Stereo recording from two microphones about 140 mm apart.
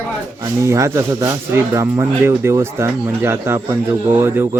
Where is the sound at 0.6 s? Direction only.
20° right (ahead or behind).